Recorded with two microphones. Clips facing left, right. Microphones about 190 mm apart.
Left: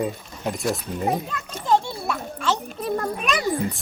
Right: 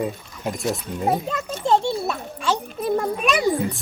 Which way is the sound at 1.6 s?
25° right (ahead or behind).